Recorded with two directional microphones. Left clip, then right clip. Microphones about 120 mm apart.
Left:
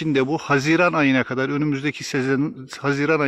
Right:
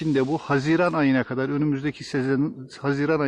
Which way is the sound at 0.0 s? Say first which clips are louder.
Left 2 dB; 20° left (ahead or behind).